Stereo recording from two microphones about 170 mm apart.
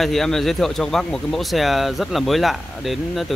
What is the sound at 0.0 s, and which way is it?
Speech, centre (ahead or behind).